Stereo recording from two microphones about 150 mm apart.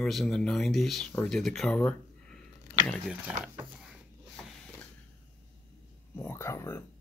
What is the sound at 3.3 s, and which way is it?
Speech, 5° right (ahead or behind).